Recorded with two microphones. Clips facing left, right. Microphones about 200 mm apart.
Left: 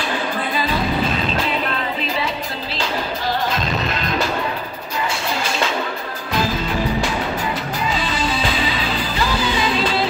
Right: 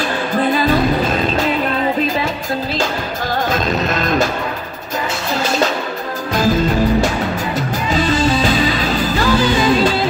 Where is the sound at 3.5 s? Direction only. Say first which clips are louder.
Right 5 dB; 45° right (ahead or behind).